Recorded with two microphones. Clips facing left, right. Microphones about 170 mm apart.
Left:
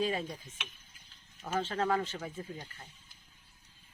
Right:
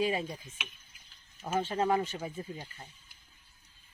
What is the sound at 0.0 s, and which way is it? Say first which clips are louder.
Speech: right 2 dB; 10° right (ahead or behind).